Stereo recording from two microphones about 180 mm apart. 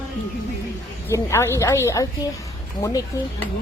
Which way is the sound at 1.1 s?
15° left (ahead or behind).